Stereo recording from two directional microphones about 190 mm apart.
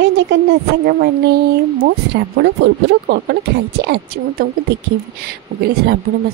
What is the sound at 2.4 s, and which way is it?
Speech, 65° right (ahead or behind).